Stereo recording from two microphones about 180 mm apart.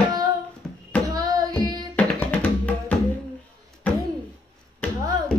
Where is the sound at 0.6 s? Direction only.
5° left (ahead or behind).